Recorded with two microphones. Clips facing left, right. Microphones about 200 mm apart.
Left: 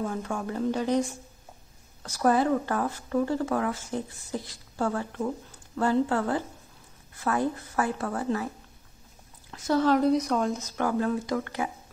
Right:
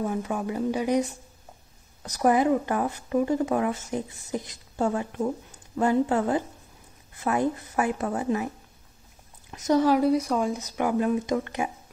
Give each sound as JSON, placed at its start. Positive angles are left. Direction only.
{"t": 0.0, "sound": "speech", "side_deg": -15}
{"t": 2.0, "sound": "speech", "side_deg": -15}
{"t": 9.5, "sound": "speech", "side_deg": -15}
{"t": 10.6, "sound": "speech", "side_deg": -15}